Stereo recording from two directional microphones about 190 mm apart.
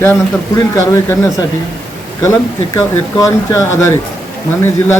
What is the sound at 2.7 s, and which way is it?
Speech, 15° left (ahead or behind).